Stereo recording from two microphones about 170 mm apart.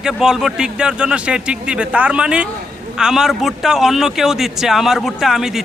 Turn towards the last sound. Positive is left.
turn(degrees=0)  # may be behind; listen again after turning